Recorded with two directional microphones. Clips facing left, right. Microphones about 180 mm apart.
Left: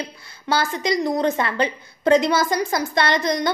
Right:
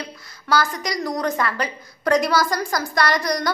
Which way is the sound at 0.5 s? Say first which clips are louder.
Left 1 dB; 25° left (ahead or behind).